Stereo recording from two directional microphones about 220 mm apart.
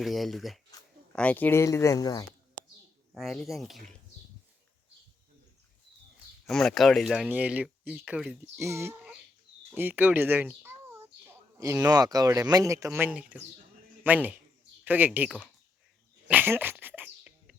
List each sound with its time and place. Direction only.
0.0 s speech: centre (ahead or behind); by 2.2 s 15° left (ahead or behind)
3.2 s speech: centre (ahead or behind)
6.4 s speech: centre (ahead or behind)
16.3 s dog: 10° right (ahead or behind)